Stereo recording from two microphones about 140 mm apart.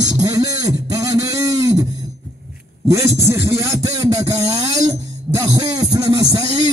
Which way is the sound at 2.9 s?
20° right (ahead or behind).